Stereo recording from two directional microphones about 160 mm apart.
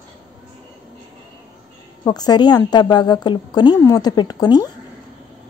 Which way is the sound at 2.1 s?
25° left (ahead or behind).